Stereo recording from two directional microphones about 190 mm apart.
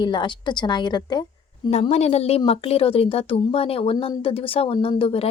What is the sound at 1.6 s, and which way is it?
A woman's voice, 35° left (ahead or behind).